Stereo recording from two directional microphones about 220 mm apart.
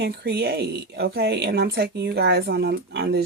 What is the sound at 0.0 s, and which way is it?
Speech, 50° right (ahead or behind).